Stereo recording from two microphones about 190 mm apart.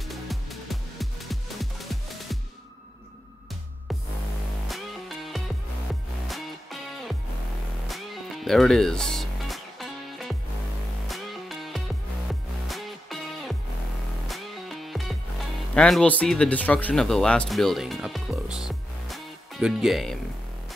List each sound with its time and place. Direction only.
0.0 s music: centre (ahead or behind)
4.6 s music: centre (ahead or behind)
11.1 s music: centre (ahead or behind)
15.7 s speech: 5° left (ahead or behind)